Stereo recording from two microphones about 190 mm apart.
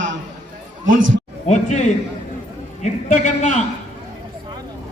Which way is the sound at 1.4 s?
40° left (ahead or behind).